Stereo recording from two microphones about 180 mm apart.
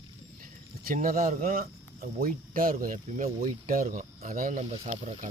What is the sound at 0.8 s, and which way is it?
Speech, 50° right (ahead or behind).